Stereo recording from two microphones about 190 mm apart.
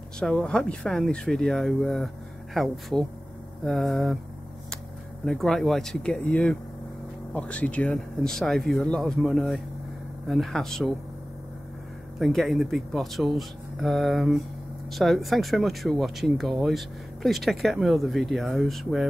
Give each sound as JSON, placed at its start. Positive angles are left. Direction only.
{"t": 0.2, "sound": "speech", "side_deg": 5}
{"t": 5.2, "sound": "speech", "side_deg": 0}
{"t": 12.2, "sound": "speech", "side_deg": 0}